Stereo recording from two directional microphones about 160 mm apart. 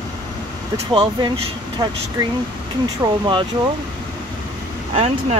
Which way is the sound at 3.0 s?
20° right (ahead or behind).